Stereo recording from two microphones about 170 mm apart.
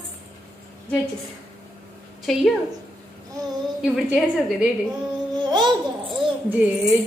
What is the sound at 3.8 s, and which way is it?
Speech, 5° right (ahead or behind).